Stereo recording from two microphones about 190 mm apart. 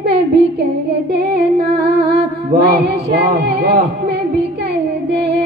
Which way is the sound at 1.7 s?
55° right (ahead or behind).